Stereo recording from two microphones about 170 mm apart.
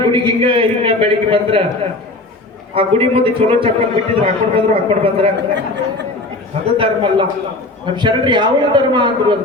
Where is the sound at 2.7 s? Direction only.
30° right (ahead or behind).